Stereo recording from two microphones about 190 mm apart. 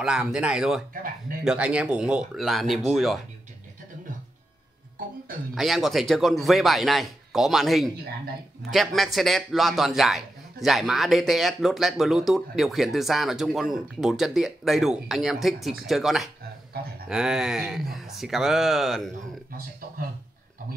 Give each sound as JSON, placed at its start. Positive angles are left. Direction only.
{"t": 0.0, "sound": "speech", "side_deg": -5}
{"t": 5.5, "sound": "speech", "side_deg": 0}